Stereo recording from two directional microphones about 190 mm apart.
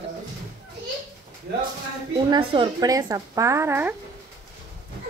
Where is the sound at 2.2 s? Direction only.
25° right (ahead or behind).